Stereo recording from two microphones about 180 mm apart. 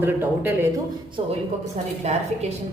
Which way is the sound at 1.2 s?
30° right (ahead or behind).